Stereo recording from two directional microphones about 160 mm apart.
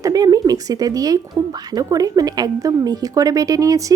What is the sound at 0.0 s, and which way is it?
A woman's voice, 20° right (ahead or behind).